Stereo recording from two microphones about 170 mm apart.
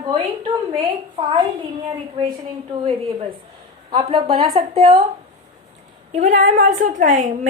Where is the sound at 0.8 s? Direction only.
25° right (ahead or behind).